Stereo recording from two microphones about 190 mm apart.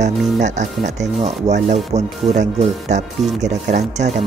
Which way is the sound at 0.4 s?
40° right (ahead or behind).